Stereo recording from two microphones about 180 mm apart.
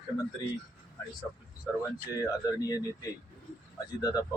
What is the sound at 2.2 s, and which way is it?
Speech, 20° left (ahead or behind).